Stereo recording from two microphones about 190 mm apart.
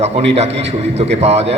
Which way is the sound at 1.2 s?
35° right (ahead or behind).